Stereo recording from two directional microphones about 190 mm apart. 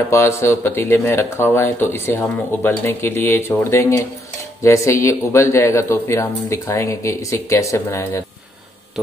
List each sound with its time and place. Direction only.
0.1 s speech: 15° left (ahead or behind)